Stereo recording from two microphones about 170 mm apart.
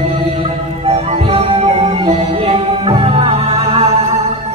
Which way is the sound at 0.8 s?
35° right (ahead or behind).